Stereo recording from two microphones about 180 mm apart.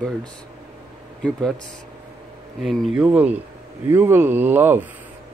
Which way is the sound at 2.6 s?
Centre (ahead or behind).